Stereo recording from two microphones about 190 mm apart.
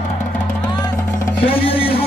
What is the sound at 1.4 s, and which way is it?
Speech, 30° left (ahead or behind).